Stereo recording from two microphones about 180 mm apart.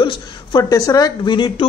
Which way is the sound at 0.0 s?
25° left (ahead or behind).